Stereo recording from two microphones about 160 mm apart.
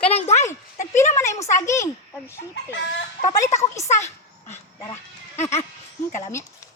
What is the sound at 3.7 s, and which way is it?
Speech, 20° left (ahead or behind).